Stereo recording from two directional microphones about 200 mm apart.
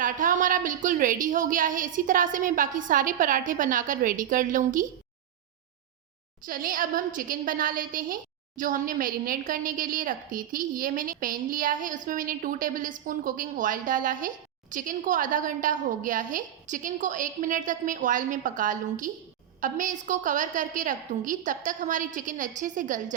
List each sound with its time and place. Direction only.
0.0 s a woman's voice: 40° right (ahead or behind)
6.4 s a woman's voice: 45° right (ahead or behind)